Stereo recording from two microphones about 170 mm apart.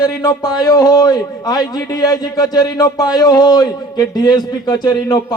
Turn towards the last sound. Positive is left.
turn(degrees=25)  # may be behind; listen again after turning